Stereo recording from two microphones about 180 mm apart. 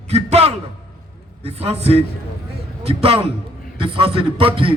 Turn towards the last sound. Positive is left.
turn(degrees=-30)  # may be behind; listen again after turning